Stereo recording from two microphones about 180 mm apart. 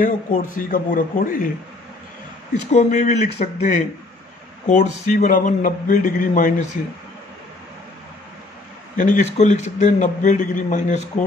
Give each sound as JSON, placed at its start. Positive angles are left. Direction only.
{"t": 0.0, "sound": "a man's voice", "side_deg": 50}
{"t": 2.7, "sound": "speech", "side_deg": 40}
{"t": 4.6, "sound": "a man's voice", "side_deg": 45}
{"t": 8.9, "sound": "a man's voice", "side_deg": 45}